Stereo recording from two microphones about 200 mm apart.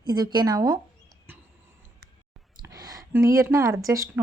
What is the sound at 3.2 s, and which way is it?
Speech, 15° right (ahead or behind).